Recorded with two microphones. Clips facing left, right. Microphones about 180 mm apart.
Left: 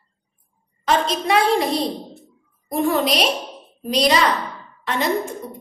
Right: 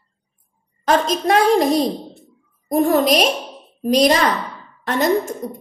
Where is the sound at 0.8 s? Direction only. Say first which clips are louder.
Right 3 dB; 45° right (ahead or behind).